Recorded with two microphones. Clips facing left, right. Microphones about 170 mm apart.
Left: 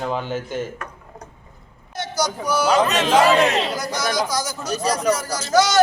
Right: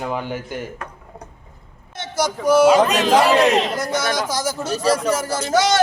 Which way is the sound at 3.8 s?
25° right (ahead or behind).